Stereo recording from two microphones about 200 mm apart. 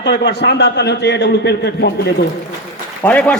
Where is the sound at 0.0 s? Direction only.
55° left (ahead or behind).